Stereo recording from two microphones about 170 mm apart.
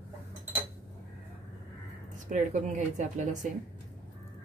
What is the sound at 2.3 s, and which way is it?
Speech, 45° right (ahead or behind).